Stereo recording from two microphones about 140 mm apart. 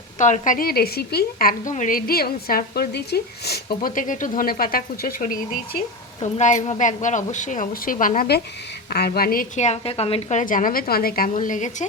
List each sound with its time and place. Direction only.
0.2 s a woman's voice: 65° left (ahead or behind)
6.2 s a woman's voice: 55° left (ahead or behind)
8.9 s a woman's voice: 90° left
9.6 s a woman's voice: 45° left (ahead or behind); by 11.9 s 65° left (ahead or behind)